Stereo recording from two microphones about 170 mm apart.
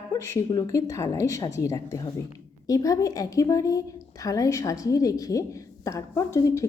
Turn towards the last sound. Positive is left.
turn(degrees=20)  # may be behind; listen again after turning